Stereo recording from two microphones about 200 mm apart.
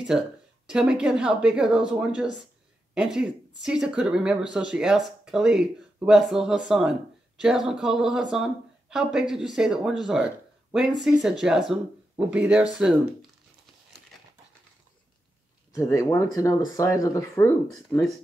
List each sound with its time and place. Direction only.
0.1 s speech: centre (ahead or behind)
15.7 s speech: 15° left (ahead or behind)